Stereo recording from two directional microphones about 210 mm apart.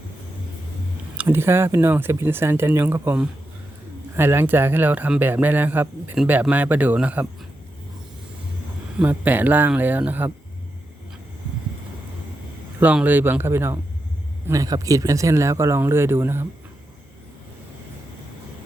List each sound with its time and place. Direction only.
1.1 s a man's voice: 10° right (ahead or behind)
9.0 s a man's voice: 10° right (ahead or behind)
12.8 s a man's voice: 5° right (ahead or behind)